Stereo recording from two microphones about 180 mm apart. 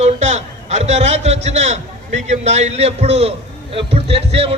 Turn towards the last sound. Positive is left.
turn(degrees=-35)  # may be behind; listen again after turning